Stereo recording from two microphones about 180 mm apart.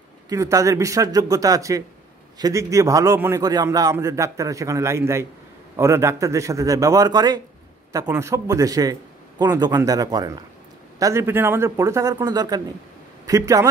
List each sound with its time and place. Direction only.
0.3 s a man's voice: 15° right (ahead or behind)